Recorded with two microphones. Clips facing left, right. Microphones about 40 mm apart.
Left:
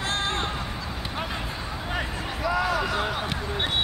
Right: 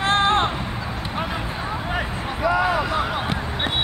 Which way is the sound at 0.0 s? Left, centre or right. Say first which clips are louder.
Right 9 dB; right.